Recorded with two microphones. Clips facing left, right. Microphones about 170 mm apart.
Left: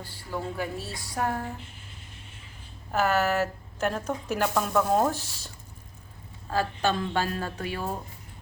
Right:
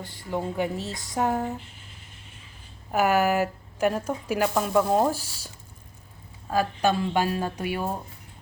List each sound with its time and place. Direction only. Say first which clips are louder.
0.0 s speech: right 4 dB; 20° right (ahead or behind)
2.9 s a woman's voice: right 3 dB; 15° right (ahead or behind)
6.5 s a woman's voice: right 3 dB; 15° right (ahead or behind)